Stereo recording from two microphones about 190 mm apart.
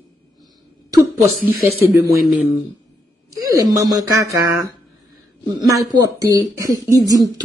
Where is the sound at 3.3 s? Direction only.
20° right (ahead or behind).